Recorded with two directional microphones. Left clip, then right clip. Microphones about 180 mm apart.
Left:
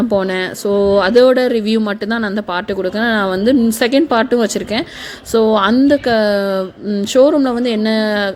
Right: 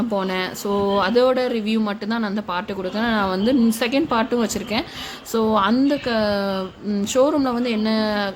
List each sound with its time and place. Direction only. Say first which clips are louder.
0.1 s speech: left 7 dB; 25° left (ahead or behind)